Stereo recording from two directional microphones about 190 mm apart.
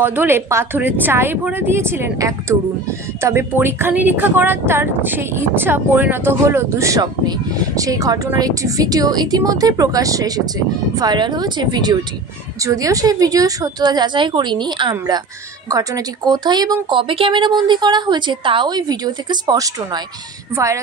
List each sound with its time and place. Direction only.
0.0 s a woman's voice: 10° right (ahead or behind)